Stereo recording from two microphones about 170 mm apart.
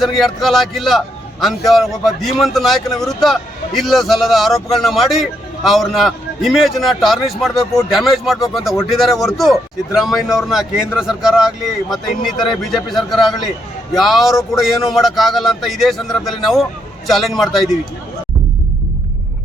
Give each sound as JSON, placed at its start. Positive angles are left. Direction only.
{"t": 0.0, "sound": "a man's voice", "side_deg": 0}